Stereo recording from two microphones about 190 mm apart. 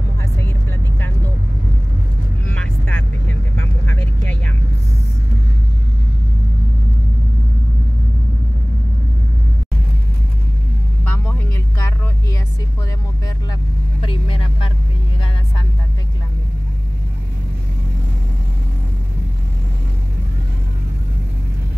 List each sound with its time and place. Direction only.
2.4 s vehicle: 5° left (ahead or behind)
11.1 s vehicle: 10° left (ahead or behind)
14.0 s vehicle: 30° left (ahead or behind)